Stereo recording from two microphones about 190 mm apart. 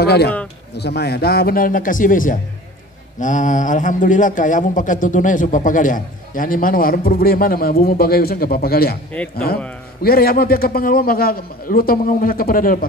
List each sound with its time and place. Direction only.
0.0 s a man's voice: 60° left (ahead or behind)
10.0 s speech: 50° left (ahead or behind)